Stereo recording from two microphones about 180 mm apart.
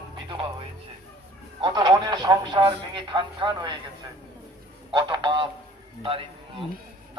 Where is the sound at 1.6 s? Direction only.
25° right (ahead or behind).